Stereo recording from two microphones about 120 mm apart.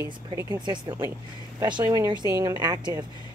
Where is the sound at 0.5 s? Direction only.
35° right (ahead or behind).